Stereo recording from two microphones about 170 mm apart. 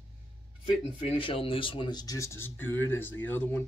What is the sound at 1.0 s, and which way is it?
Speech, 30° left (ahead or behind).